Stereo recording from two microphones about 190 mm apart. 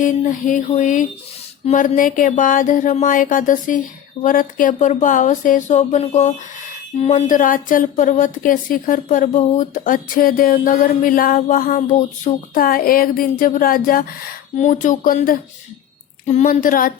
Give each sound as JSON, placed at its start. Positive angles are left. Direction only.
{"t": 0.0, "sound": "speech", "side_deg": 40}